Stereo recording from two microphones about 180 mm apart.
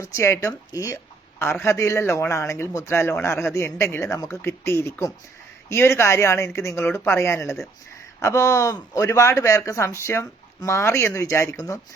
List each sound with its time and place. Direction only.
0.0 s speech: 15° left (ahead or behind)